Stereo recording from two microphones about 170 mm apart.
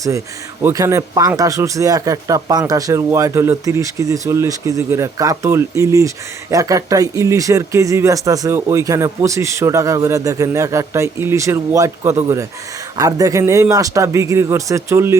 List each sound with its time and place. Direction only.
0.6 s speech: 20° right (ahead or behind)